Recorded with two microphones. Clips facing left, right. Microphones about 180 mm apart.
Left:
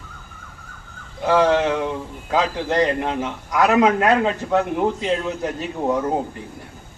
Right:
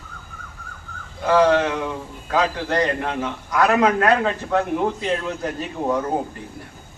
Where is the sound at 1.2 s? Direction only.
20° left (ahead or behind).